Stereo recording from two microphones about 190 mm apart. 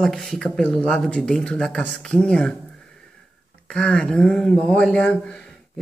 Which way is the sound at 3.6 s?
5° left (ahead or behind).